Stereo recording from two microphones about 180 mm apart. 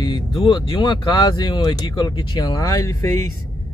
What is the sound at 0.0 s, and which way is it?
Speech, 25° left (ahead or behind).